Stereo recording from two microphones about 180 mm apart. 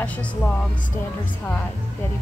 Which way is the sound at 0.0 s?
10° left (ahead or behind).